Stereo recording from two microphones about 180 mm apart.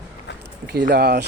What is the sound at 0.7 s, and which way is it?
Speech, 55° right (ahead or behind).